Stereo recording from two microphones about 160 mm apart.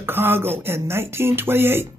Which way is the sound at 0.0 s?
15° right (ahead or behind).